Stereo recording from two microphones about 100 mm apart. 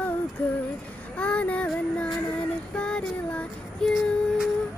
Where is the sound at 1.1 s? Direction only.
15° left (ahead or behind).